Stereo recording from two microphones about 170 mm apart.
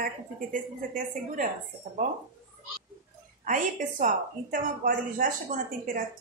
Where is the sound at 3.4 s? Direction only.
50° right (ahead or behind).